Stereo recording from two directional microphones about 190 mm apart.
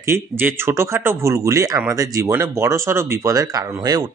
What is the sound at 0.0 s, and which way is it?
Speech, 10° right (ahead or behind).